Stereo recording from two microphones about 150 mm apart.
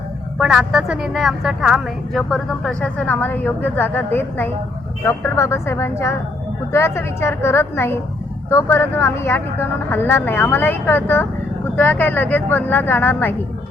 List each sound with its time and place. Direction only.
0.3 s a woman's voice: centre (ahead or behind); by 13.3 s 15° left (ahead or behind)